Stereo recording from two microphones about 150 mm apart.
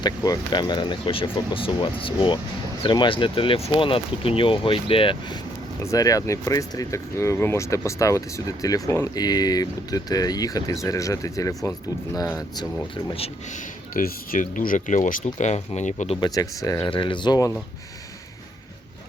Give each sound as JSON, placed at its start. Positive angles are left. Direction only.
{"t": 0.0, "sound": "speech", "side_deg": 25}
{"t": 5.8, "sound": "speech", "side_deg": 20}
{"t": 13.1, "sound": "speech", "side_deg": 40}
{"t": 13.9, "sound": "speech", "side_deg": 70}
{"t": 16.2, "sound": "speech", "side_deg": 25}
{"t": 16.9, "sound": "speech", "side_deg": 35}